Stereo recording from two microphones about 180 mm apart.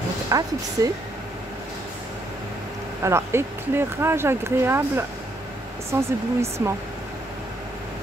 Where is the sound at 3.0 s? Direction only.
15° right (ahead or behind).